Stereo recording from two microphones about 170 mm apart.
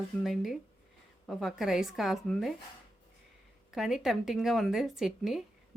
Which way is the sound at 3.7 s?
Centre (ahead or behind).